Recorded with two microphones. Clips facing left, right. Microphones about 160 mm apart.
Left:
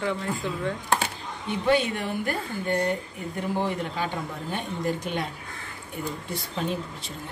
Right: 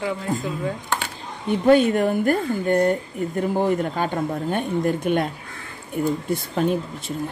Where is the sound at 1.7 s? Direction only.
45° right (ahead or behind).